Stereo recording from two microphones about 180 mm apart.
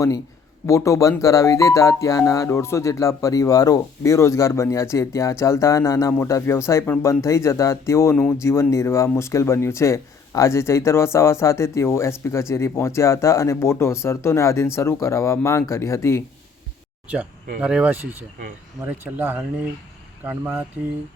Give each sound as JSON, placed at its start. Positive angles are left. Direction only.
{"t": 0.7, "sound": "speech", "side_deg": 15}
{"t": 17.6, "sound": "speech", "side_deg": -5}